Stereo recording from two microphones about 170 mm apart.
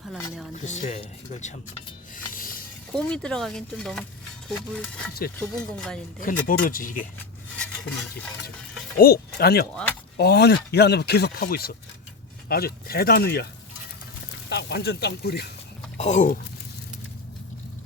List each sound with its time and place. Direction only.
0.6 s speech: 45° left (ahead or behind)
2.1 s rub: 55° left (ahead or behind)
2.9 s speech: 5° left (ahead or behind)
6.2 s speech: 55° left (ahead or behind)
7.7 s stir: 5° left (ahead or behind)
9.0 s speech: 65° left (ahead or behind)
9.7 s speech: 10° left (ahead or behind)
10.2 s speech: 75° left (ahead or behind)
14.5 s speech: 70° left (ahead or behind)
16.0 s speech: 40° left (ahead or behind)